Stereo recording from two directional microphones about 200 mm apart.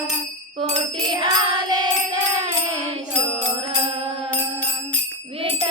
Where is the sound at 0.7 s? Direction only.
20° right (ahead or behind).